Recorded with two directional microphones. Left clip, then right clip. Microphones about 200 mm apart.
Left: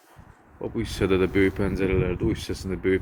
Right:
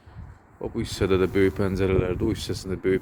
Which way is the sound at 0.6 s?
10° right (ahead or behind).